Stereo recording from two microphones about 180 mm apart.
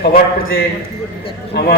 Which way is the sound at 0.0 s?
60° left (ahead or behind).